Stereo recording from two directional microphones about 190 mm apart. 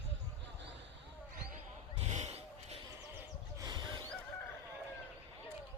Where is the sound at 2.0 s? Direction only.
35° right (ahead or behind).